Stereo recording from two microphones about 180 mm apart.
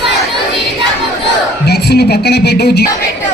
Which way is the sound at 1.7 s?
60° left (ahead or behind).